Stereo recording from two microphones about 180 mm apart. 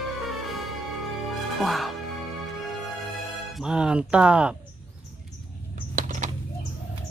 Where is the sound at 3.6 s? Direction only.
5° right (ahead or behind).